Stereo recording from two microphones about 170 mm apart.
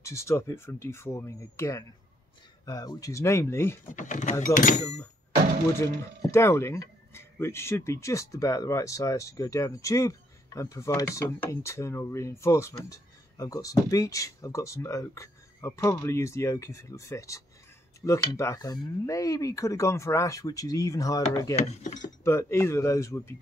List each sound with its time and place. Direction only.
0.0 s speech: 15° left (ahead or behind)
3.8 s speech: 50° left (ahead or behind)
5.8 s speech: 15° left (ahead or behind)
21.5 s speech: 45° left (ahead or behind)
22.2 s speech: 15° left (ahead or behind)